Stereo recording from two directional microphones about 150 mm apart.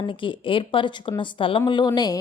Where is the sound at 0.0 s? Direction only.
35° left (ahead or behind).